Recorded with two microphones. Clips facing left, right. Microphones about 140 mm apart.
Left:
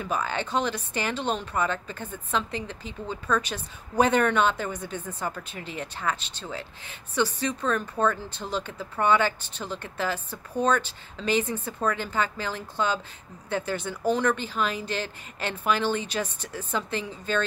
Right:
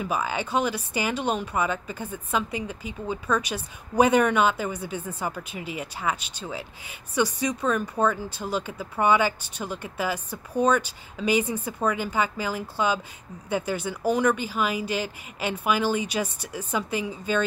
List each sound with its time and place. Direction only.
0.0 s speech: 10° right (ahead or behind)